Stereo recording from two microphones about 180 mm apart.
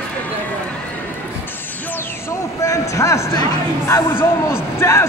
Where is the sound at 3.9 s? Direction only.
10° left (ahead or behind).